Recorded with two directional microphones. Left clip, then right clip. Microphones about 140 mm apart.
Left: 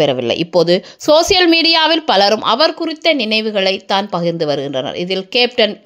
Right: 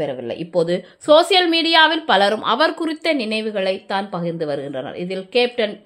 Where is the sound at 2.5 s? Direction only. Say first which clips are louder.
Left 4 dB; 15° left (ahead or behind).